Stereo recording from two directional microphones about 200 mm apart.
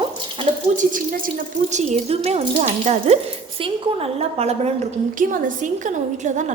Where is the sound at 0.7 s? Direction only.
45° right (ahead or behind).